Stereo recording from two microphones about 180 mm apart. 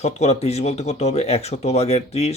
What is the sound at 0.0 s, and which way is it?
Speech, 35° left (ahead or behind).